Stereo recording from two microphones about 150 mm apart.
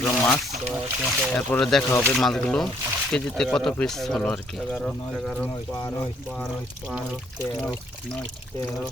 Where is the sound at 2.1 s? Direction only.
Centre (ahead or behind).